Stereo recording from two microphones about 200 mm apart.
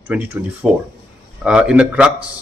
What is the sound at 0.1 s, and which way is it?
Speech, 10° right (ahead or behind).